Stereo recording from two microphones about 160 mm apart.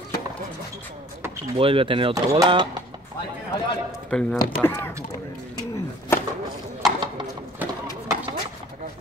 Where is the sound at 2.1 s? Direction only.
20° right (ahead or behind).